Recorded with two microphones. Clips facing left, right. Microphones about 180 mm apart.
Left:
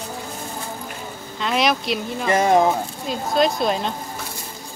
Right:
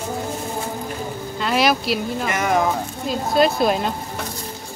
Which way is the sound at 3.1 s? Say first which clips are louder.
Right 2 dB; 5° right (ahead or behind).